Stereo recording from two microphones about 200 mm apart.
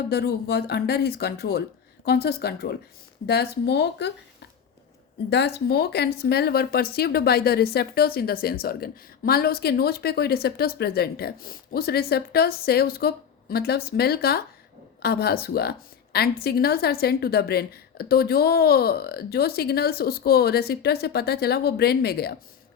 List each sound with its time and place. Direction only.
0.1 s speech: 55° left (ahead or behind)
5.3 s speech: 55° left (ahead or behind)